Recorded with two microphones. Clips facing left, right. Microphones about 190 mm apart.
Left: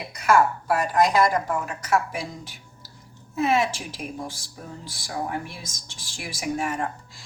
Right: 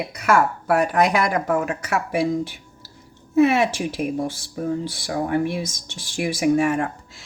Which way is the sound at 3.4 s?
65° right (ahead or behind).